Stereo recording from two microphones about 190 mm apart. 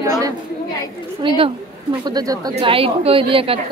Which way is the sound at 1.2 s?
25° right (ahead or behind).